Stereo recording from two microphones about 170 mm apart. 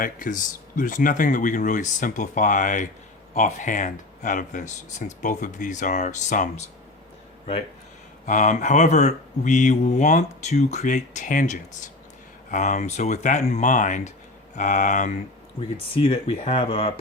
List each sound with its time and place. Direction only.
0.0 s speech: 50° left (ahead or behind)
8.3 s speech: 45° left (ahead or behind)
15.9 s speech: 35° left (ahead or behind)